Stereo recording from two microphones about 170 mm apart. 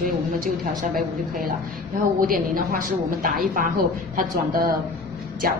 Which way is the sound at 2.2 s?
55° right (ahead or behind).